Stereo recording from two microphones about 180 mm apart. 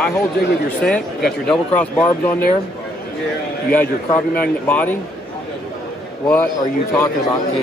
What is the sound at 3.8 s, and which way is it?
Speech, 55° left (ahead or behind).